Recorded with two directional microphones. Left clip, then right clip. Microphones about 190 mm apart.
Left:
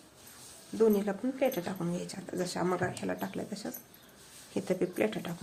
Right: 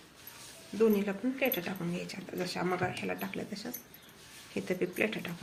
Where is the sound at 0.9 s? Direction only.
60° left (ahead or behind).